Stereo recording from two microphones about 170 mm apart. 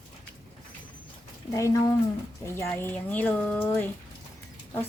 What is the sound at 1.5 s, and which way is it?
A woman's voice, 20° left (ahead or behind).